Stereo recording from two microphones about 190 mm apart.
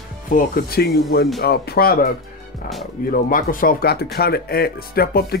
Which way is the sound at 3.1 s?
45° left (ahead or behind).